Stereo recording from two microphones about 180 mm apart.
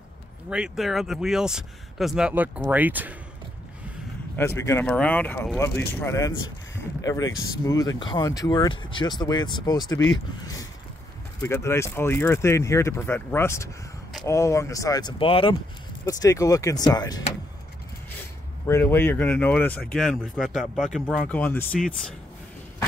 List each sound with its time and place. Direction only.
0.5 s speech: 5° right (ahead or behind)
4.6 s speech: 10° left (ahead or behind); by 15.5 s 30° left (ahead or behind)
16.1 s speech: 20° left (ahead or behind)
18.7 s speech: 15° left (ahead or behind)